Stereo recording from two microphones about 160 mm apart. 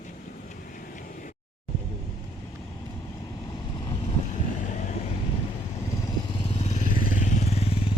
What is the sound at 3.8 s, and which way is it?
Boat, 30° left (ahead or behind).